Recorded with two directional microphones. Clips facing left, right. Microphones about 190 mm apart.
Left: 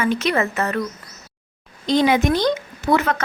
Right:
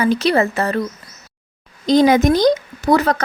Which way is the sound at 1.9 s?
40° right (ahead or behind).